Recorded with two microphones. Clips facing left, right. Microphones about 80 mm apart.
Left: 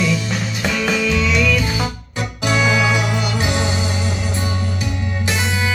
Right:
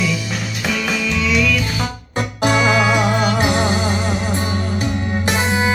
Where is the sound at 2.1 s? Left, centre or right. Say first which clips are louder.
Right 3 dB; right.